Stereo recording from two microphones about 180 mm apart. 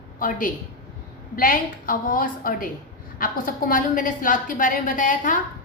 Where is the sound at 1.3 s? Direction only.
50° left (ahead or behind).